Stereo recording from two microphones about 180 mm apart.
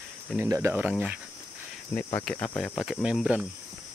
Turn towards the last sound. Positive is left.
turn(degrees=-5)  # may be behind; listen again after turning